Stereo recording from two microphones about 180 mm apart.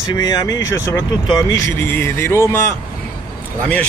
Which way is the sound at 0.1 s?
20° left (ahead or behind).